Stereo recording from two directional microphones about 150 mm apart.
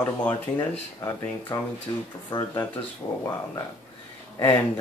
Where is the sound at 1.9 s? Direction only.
25° left (ahead or behind).